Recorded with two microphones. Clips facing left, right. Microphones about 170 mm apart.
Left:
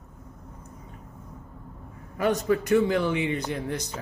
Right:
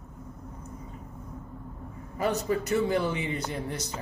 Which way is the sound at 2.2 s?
80° left.